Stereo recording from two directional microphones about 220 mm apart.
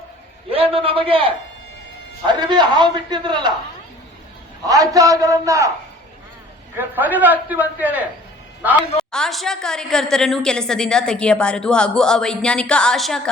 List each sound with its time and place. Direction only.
0.5 s a man's voice: 25° right (ahead or behind)
4.6 s a man's voice: 15° right (ahead or behind)
6.7 s a man's voice: 10° right (ahead or behind)